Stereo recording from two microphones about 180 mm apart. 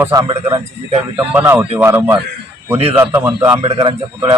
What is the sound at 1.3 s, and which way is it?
A man's voice, 10° right (ahead or behind).